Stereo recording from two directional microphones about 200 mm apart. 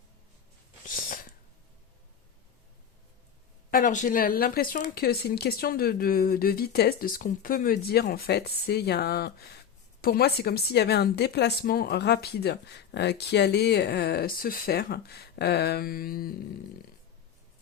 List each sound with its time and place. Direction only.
3.7 s a woman's voice: 40° left (ahead or behind)